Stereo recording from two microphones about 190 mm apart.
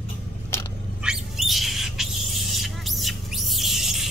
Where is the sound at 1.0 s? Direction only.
Centre (ahead or behind).